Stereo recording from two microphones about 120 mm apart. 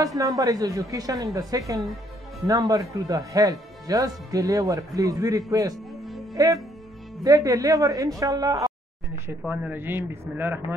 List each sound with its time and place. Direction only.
0.0 s speech: 30° right (ahead or behind)
9.5 s a man's voice: 15° right (ahead or behind)